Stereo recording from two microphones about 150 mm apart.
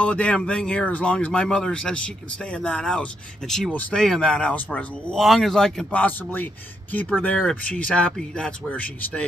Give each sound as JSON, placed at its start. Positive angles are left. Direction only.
{"t": 0.0, "sound": "speech", "side_deg": 10}